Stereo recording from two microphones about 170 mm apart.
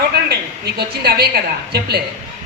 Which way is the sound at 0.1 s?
70° right (ahead or behind).